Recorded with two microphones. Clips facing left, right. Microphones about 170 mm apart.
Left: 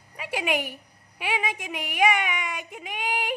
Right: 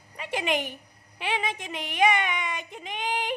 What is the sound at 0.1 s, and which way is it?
A woman's voice, 5° left (ahead or behind).